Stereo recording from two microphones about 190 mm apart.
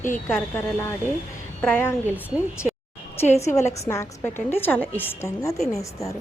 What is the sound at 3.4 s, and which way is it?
A woman's voice, 15° left (ahead or behind).